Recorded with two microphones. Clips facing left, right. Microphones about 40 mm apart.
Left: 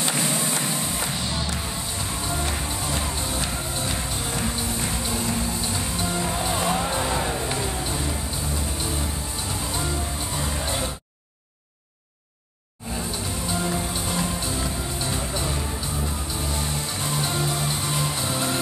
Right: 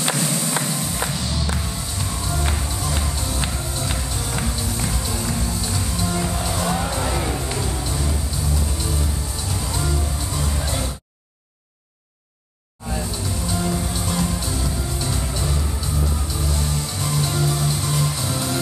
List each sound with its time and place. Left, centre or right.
0.1 s music: left
3.0 s music: left
4.6 s music: centre
7.4 s music: centre
9.7 s music: left
13.5 s music: centre
16.5 s music: left